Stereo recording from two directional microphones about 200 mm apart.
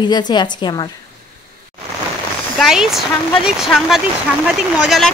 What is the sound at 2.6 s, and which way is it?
Speech, centre (ahead or behind).